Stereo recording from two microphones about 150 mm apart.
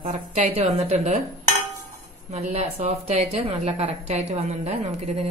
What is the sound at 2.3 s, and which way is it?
A woman's voice, 45° right (ahead or behind).